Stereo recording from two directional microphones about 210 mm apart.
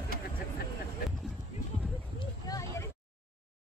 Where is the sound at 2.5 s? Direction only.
15° left (ahead or behind).